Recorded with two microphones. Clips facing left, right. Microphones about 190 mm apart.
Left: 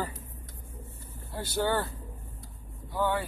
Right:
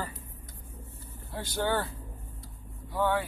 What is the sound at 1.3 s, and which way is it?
Speech, centre (ahead or behind).